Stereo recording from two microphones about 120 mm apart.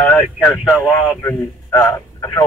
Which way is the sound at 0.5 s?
Centre (ahead or behind).